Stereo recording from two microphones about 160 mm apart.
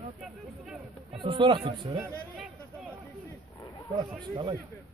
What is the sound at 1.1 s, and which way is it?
Speech, 30° right (ahead or behind).